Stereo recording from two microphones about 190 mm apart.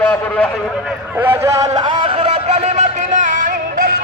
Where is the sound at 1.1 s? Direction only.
10° right (ahead or behind).